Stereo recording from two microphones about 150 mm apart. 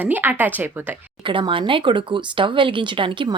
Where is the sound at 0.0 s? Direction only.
15° right (ahead or behind).